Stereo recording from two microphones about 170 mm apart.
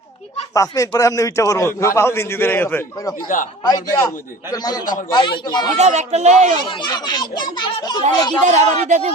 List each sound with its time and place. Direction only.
0.5 s a man's voice: 20° left (ahead or behind)
5.7 s speech: 40° right (ahead or behind)
6.6 s speech: 25° left (ahead or behind)
8.4 s speech: 45° right (ahead or behind)